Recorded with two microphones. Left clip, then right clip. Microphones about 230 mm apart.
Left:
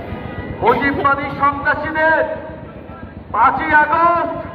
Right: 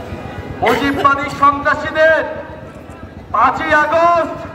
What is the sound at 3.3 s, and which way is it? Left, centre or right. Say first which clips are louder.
Speech: even; right.